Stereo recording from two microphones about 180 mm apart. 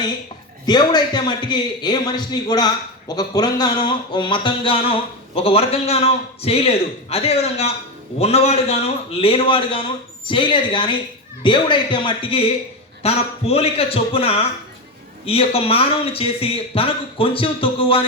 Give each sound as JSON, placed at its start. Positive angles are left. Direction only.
{"t": 0.6, "sound": "a man's voice", "side_deg": 25}